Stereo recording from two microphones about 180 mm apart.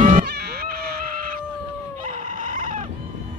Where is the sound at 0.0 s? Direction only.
45° right (ahead or behind).